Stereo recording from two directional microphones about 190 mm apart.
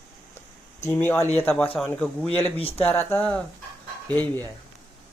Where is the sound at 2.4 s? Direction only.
30° left (ahead or behind).